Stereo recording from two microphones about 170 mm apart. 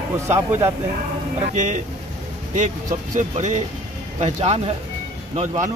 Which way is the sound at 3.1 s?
45° right (ahead or behind).